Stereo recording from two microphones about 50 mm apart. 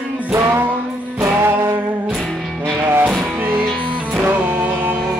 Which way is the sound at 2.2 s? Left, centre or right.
Centre.